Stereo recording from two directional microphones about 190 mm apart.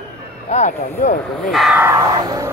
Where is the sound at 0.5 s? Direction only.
40° left (ahead or behind).